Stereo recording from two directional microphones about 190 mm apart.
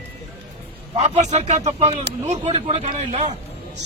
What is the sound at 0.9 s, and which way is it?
A man's voice, 35° right (ahead or behind).